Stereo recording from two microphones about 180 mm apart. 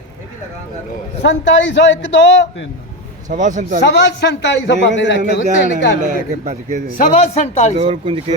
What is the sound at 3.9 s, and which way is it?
A man's voice, 70° left (ahead or behind).